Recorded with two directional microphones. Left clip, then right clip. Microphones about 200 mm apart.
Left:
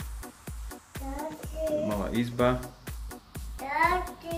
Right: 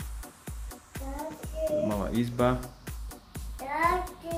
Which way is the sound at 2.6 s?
Centre (ahead or behind).